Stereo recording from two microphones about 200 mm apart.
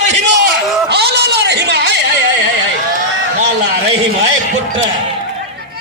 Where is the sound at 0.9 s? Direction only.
55° right (ahead or behind).